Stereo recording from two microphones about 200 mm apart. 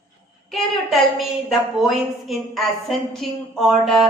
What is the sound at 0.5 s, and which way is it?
A woman's voice, centre (ahead or behind).